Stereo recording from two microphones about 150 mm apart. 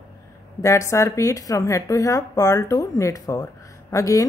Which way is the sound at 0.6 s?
20° left (ahead or behind).